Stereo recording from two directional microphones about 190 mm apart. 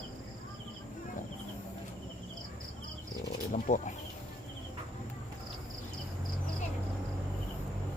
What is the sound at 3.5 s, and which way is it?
Wild animals, 40° left (ahead or behind).